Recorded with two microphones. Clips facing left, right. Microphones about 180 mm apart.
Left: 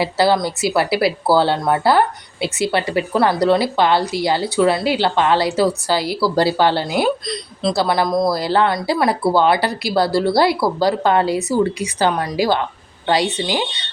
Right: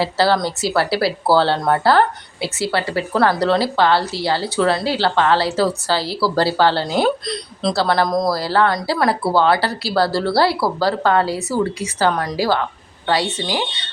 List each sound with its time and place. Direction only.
0.0 s speech: 15° left (ahead or behind)
8.0 s speech: 5° left (ahead or behind)
8.3 s a woman's voice: 20° left (ahead or behind)